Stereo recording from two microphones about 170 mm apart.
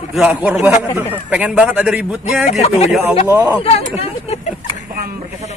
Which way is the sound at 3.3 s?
10° right (ahead or behind).